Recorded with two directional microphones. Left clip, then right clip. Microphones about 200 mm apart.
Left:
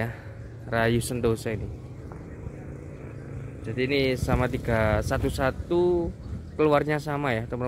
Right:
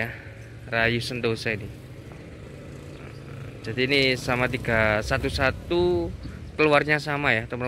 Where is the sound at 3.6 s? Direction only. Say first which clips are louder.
Right 3 dB; centre (ahead or behind).